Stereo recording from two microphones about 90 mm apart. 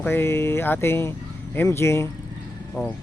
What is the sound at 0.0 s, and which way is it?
Speech, 25° left (ahead or behind).